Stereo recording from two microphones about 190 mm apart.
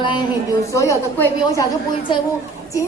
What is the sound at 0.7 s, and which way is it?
Speech, 15° left (ahead or behind).